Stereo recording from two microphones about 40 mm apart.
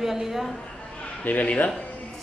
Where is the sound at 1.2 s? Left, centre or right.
Left.